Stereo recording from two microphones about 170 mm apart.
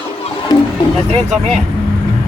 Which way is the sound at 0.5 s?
25° left (ahead or behind).